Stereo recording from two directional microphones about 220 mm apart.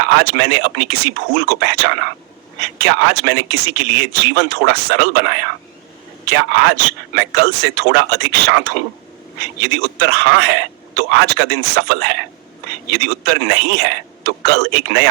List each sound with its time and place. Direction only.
0.0 s speech: 50° right (ahead or behind)
10.0 s speech: 50° right (ahead or behind)